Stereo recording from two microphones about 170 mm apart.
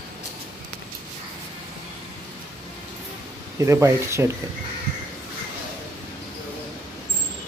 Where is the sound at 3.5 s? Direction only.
15° right (ahead or behind).